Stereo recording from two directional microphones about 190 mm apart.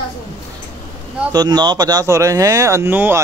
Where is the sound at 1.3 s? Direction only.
20° right (ahead or behind).